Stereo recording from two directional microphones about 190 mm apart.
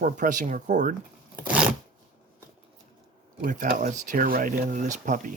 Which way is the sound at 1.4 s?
10° right (ahead or behind).